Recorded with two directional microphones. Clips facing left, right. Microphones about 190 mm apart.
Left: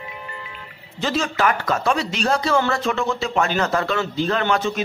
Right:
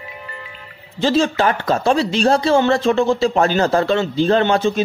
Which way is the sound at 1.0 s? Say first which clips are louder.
Right 5 dB; 30° right (ahead or behind).